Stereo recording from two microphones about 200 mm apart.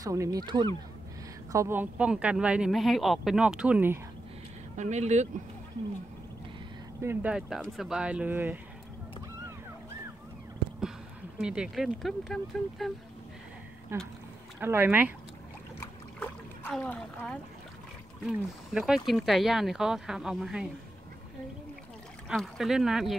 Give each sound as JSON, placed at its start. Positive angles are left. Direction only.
{"t": 0.0, "sound": "speech", "side_deg": -15}
{"t": 1.5, "sound": "speech", "side_deg": -15}
{"t": 4.7, "sound": "speech", "side_deg": -35}
{"t": 7.0, "sound": "speech", "side_deg": -10}
{"t": 11.3, "sound": "speech", "side_deg": -5}
{"t": 13.9, "sound": "speech", "side_deg": -10}
{"t": 15.8, "sound": "a sound", "side_deg": 10}
{"t": 18.2, "sound": "speech", "side_deg": 0}
{"t": 22.3, "sound": "speech", "side_deg": 0}